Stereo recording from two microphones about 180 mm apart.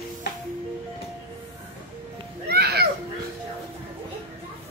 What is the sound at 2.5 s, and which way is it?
Children playing, 65° right (ahead or behind).